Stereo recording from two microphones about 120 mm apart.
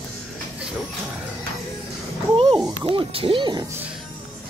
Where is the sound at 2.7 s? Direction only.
45° right (ahead or behind).